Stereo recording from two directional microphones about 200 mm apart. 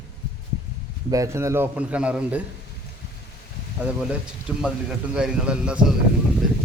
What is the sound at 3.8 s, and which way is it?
Speech, 5° right (ahead or behind).